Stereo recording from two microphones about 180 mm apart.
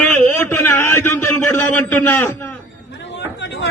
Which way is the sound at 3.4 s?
75° left (ahead or behind).